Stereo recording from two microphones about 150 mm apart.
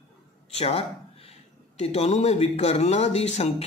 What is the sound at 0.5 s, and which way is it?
A man's voice, 40° left (ahead or behind).